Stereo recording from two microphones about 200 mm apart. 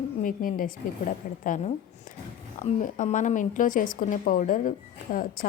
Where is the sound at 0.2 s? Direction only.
45° left (ahead or behind).